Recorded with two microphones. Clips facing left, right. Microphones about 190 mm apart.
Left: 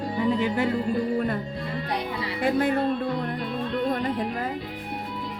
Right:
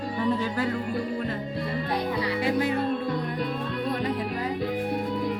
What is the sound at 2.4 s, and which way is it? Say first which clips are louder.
Music: left 4 dB; 50° left (ahead or behind).